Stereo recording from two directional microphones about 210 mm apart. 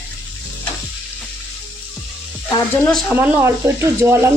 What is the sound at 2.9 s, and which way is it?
Speech, 5° right (ahead or behind).